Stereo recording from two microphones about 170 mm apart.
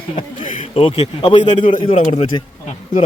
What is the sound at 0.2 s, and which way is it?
A man's voice, 35° left (ahead or behind).